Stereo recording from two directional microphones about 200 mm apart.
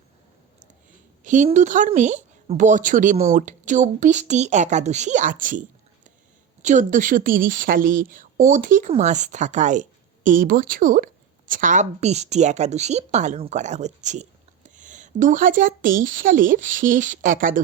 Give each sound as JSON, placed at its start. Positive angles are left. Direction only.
{"t": 1.2, "sound": "a woman's voice", "side_deg": -40}